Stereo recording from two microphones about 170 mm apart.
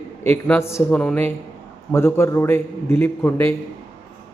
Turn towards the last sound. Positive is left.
turn(degrees=10)  # may be behind; listen again after turning